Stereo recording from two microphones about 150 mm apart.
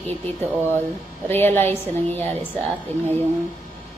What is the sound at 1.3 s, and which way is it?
Speech, 15° left (ahead or behind).